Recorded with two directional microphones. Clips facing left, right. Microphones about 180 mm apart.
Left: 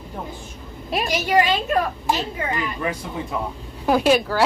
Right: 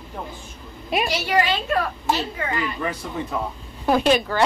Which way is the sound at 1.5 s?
15° left (ahead or behind).